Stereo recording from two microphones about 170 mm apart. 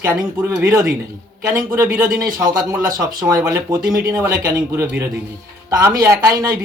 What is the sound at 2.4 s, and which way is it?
Speech, 20° right (ahead or behind).